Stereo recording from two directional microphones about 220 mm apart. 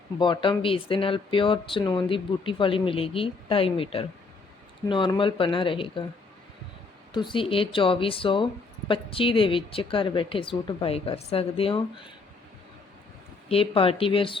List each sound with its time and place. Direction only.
0.2 s speech: 20° left (ahead or behind)
7.1 s speech: 20° left (ahead or behind)
13.5 s speech: 25° left (ahead or behind)